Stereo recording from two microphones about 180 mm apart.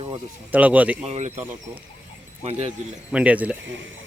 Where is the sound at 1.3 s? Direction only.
10° right (ahead or behind).